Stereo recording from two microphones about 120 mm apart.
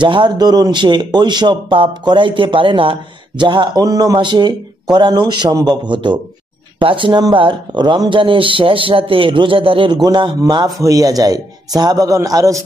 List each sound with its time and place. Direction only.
0.0 s speech: 40° right (ahead or behind)
10.0 s speech: 35° right (ahead or behind)